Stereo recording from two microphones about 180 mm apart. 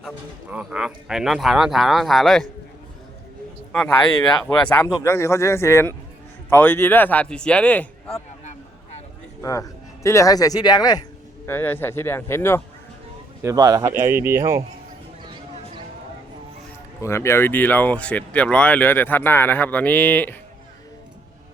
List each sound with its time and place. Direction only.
0.5 s speech: 5° right (ahead or behind)
3.7 s speech: 5° left (ahead or behind)
4.4 s speech: 20° left (ahead or behind)
9.4 s speech: 15° left (ahead or behind)
11.4 s speech: 10° left (ahead or behind)
13.4 s speech: 20° right (ahead or behind)
17.0 s speech: 15° left (ahead or behind)